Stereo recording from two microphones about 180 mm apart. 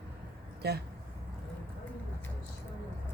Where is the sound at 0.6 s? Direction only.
65° right (ahead or behind).